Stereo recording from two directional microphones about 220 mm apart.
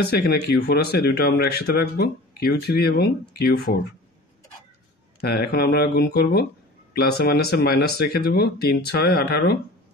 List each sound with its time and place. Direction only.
0.1 s speech: 45° left (ahead or behind)
5.2 s speech: 45° left (ahead or behind)